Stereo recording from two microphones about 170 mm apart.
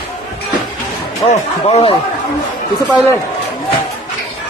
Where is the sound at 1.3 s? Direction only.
35° left (ahead or behind).